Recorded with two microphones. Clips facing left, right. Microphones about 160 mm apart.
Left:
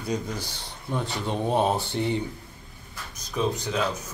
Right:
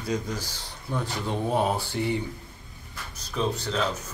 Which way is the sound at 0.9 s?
20° left (ahead or behind).